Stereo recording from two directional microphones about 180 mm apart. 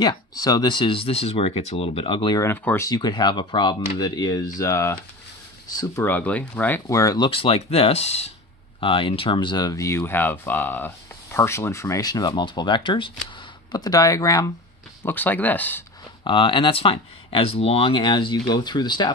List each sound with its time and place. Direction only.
0.0 s speech: 20° left (ahead or behind)
16.3 s speech: 25° left (ahead or behind)